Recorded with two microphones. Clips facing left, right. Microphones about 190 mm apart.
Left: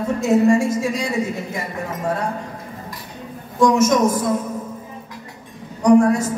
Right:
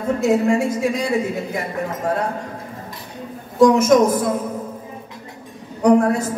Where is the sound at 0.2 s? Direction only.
60° right (ahead or behind).